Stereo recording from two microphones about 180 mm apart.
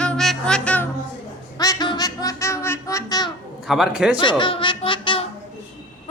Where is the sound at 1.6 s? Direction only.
20° left (ahead or behind).